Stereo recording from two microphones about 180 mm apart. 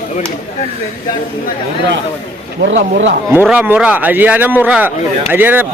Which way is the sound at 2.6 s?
90° right.